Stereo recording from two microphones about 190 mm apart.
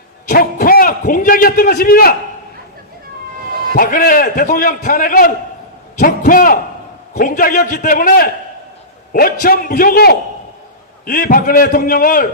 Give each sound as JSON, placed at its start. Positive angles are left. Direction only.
{"t": 0.3, "sound": "a man's voice", "side_deg": 50}
{"t": 3.8, "sound": "a man's voice", "side_deg": 50}